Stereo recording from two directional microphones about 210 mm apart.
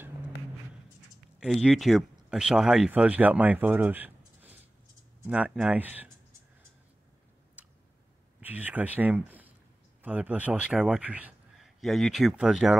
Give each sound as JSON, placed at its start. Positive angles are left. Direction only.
{"t": 1.4, "sound": "speech", "side_deg": 0}
{"t": 8.4, "sound": "a man's voice", "side_deg": -10}